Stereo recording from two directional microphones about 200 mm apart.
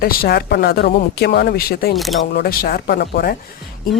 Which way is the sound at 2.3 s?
50° left (ahead or behind).